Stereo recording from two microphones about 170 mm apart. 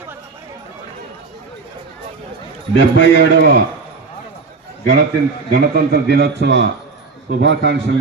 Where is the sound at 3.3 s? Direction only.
75° right (ahead or behind).